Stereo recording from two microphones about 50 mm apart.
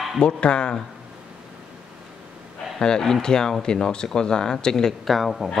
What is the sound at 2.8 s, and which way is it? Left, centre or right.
Speech, centre.